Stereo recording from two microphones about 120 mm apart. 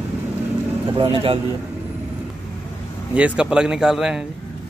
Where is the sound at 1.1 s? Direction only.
50° right (ahead or behind).